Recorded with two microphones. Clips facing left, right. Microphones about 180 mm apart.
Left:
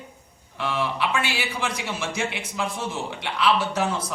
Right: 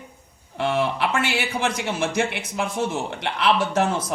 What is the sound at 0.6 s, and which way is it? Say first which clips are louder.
A man's voice: right 4 dB; 50° right (ahead or behind).